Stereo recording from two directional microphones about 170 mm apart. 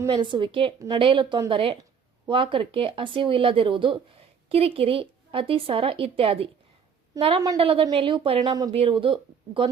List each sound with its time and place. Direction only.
0.0 s a woman's voice: 25° right (ahead or behind)